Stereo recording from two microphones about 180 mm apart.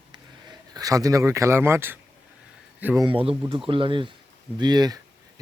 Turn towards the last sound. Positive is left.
turn(degrees=-25)  # may be behind; listen again after turning